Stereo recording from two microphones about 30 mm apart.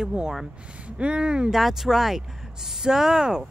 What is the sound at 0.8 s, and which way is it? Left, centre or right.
Speech, right.